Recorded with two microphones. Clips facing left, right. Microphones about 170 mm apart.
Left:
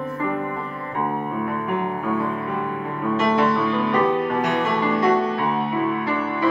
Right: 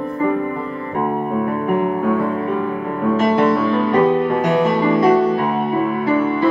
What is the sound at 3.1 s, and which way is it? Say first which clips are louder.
Music: right 4 dB; 45° right (ahead or behind).